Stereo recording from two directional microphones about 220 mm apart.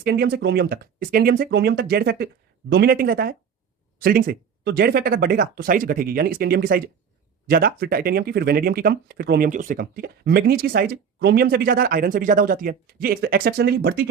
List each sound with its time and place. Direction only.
0.0 s speech: 45° right (ahead or behind)